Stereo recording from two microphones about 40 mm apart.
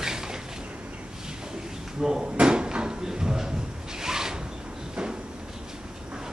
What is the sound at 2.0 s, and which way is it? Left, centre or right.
Drawer open or close, centre.